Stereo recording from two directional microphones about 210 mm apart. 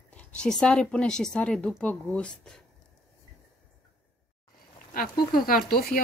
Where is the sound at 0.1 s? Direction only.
5° left (ahead or behind).